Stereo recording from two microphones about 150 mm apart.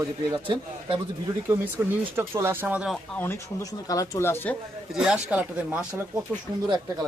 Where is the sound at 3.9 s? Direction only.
25° left (ahead or behind).